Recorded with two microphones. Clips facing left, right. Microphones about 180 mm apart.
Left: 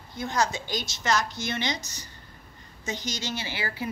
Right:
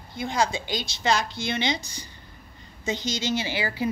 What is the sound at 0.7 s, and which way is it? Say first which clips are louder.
Speech: right 2 dB; 30° right (ahead or behind).